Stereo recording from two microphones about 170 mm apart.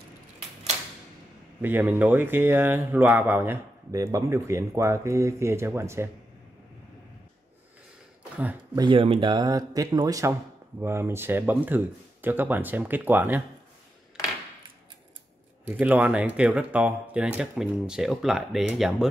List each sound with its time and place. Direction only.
1.6 s speech: 10° right (ahead or behind)
8.7 s speech: 30° right (ahead or behind); by 13.4 s 10° right (ahead or behind)
15.8 s speech: 10° right (ahead or behind)